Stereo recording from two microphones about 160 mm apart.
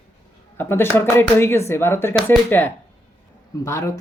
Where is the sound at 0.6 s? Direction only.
15° left (ahead or behind).